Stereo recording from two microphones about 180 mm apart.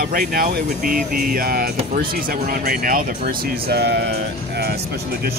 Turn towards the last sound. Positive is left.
turn(degrees=-60)  # may be behind; listen again after turning